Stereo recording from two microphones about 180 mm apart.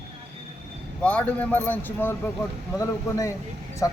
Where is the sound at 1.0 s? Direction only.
10° left (ahead or behind).